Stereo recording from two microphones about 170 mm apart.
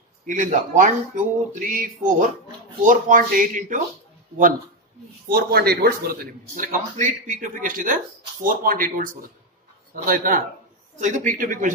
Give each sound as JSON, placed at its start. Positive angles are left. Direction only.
{"t": 0.3, "sound": "a man's voice", "side_deg": -50}
{"t": 5.3, "sound": "a man's voice", "side_deg": -70}